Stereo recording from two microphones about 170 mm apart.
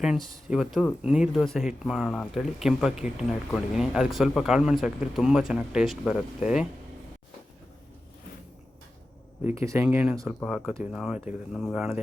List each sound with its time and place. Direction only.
0.0 s speech: 5° right (ahead or behind)
9.4 s speech: 15° right (ahead or behind)
9.8 s speech: 5° right (ahead or behind)